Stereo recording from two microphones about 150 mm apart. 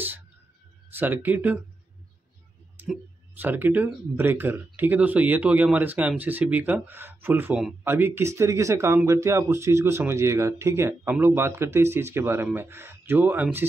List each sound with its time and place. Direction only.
0.9 s speech: 15° right (ahead or behind)
2.8 s tick: 15° right (ahead or behind)
3.3 s speech: 15° right (ahead or behind)